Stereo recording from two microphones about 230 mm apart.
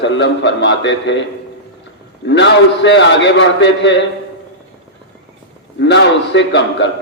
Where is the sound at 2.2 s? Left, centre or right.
Left.